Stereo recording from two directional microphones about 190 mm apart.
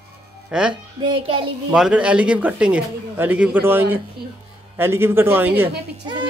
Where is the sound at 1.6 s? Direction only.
5° right (ahead or behind).